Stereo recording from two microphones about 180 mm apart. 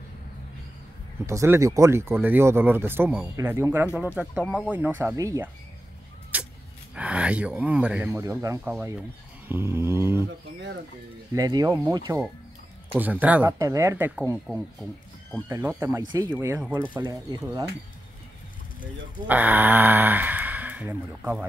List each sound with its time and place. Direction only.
1.2 s speech: 15° right (ahead or behind)
6.3 s a sound: 10° right (ahead or behind)
7.0 s speech: 5° right (ahead or behind)
8.1 s speech: 15° right (ahead or behind)
8.6 s speech: 5° right (ahead or behind)
11.3 s speech: 20° right (ahead or behind)
19.2 s speech: 10° right (ahead or behind)